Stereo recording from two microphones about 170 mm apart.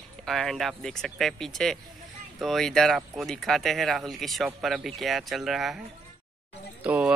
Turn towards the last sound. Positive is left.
turn(degrees=-10)  # may be behind; listen again after turning